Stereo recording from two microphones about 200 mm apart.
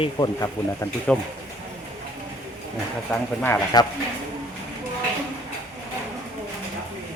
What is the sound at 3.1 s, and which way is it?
Speech, 5° left (ahead or behind).